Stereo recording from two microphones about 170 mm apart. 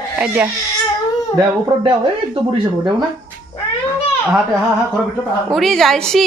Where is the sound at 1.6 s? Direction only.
30° right (ahead or behind).